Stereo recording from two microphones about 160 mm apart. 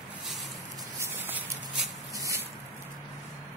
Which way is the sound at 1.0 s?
10° right (ahead or behind).